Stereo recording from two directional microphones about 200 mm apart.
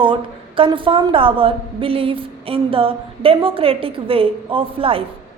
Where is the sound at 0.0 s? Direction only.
25° right (ahead or behind).